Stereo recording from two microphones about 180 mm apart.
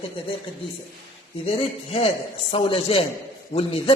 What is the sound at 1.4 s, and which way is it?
A man's voice, 35° left (ahead or behind).